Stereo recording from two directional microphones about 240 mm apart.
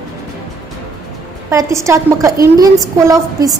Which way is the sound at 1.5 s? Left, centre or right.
Centre.